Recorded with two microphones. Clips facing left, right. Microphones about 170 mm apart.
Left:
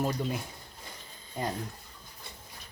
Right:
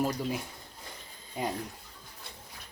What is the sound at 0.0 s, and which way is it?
Speech, 5° right (ahead or behind).